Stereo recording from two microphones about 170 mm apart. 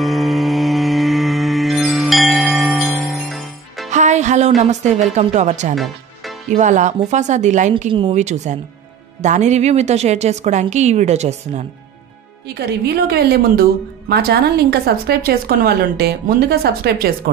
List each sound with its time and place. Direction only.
0.0 s music: centre (ahead or behind)
3.9 s music: 45° right (ahead or behind)
4.6 s a woman's voice: 45° right (ahead or behind)
12.5 s a woman's voice: 70° right (ahead or behind)